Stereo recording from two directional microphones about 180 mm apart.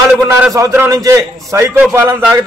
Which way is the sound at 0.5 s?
15° right (ahead or behind).